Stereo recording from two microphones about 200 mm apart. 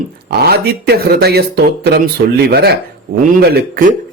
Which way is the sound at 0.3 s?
55° right (ahead or behind).